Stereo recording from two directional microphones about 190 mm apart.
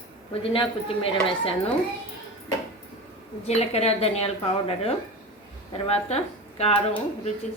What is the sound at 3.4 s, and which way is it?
A woman's voice, 35° left (ahead or behind).